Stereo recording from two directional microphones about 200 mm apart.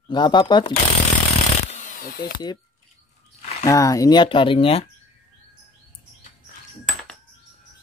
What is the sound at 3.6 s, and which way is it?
Speech, 15° left (ahead or behind).